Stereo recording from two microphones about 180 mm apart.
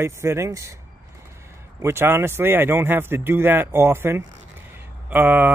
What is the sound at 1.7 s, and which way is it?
Speech, 15° right (ahead or behind).